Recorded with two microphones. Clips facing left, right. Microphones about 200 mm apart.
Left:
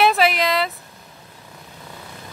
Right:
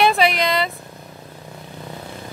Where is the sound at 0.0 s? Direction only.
Centre (ahead or behind).